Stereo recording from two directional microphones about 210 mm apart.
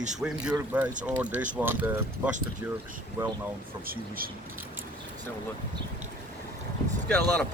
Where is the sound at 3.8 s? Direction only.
45° right (ahead or behind).